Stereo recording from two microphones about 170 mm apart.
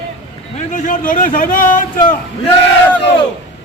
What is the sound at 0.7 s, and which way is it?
A man's voice, 50° left (ahead or behind).